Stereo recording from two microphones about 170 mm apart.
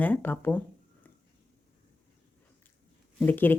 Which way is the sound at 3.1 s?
10° left (ahead or behind).